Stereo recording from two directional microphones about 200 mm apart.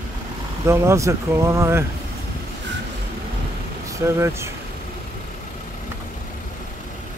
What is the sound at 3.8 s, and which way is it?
Speech, 15° right (ahead or behind).